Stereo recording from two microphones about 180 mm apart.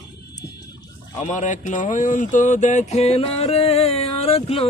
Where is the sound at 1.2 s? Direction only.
45° left (ahead or behind).